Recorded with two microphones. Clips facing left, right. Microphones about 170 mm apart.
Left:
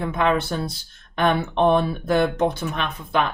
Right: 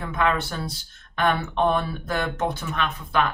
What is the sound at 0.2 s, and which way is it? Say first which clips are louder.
Speech: left 2 dB; 20° left (ahead or behind).